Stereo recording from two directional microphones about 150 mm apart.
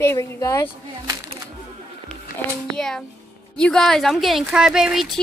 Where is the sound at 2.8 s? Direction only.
5° left (ahead or behind).